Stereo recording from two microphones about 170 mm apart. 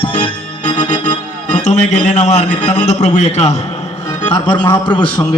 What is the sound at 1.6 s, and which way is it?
A man's voice, 45° left (ahead or behind).